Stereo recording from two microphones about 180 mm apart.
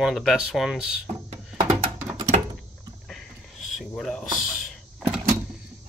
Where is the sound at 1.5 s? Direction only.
40° right (ahead or behind).